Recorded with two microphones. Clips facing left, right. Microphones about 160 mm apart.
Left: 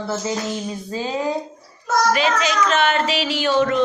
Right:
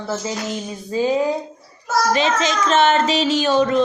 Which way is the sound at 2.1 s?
25° right (ahead or behind).